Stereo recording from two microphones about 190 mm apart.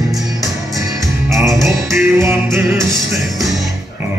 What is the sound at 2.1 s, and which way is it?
Music, 15° right (ahead or behind).